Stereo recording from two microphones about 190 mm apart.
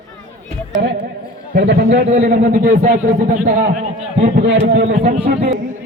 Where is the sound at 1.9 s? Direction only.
35° right (ahead or behind).